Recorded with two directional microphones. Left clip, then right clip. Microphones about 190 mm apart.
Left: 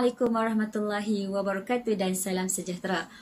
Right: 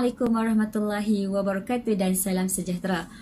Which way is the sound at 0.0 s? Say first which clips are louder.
Even; 5° right (ahead or behind).